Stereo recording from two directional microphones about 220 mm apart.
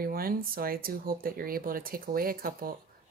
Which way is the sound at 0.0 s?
40° right (ahead or behind).